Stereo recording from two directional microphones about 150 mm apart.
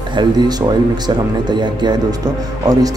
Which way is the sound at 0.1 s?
30° right (ahead or behind).